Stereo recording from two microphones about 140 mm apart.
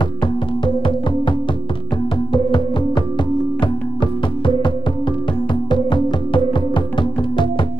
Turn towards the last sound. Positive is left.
turn(degrees=35)  # may be behind; listen again after turning